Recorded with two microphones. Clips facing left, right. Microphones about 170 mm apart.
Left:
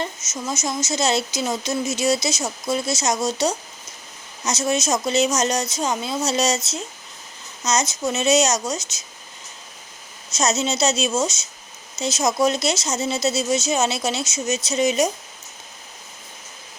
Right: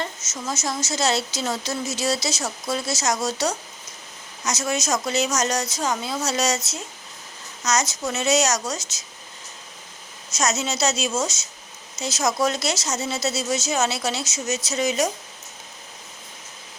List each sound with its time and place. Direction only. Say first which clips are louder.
0.4 s speech: left 2 dB; 15° left (ahead or behind)
7.6 s speech: left 2 dB; 20° left (ahead or behind)
10.3 s speech: left 3 dB; 25° left (ahead or behind)